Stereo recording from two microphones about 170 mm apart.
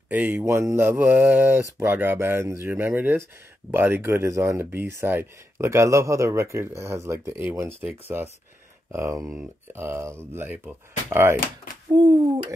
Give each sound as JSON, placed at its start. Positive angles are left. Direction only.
{"t": 0.1, "sound": "speech", "side_deg": -10}
{"t": 11.9, "sound": "speech", "side_deg": -25}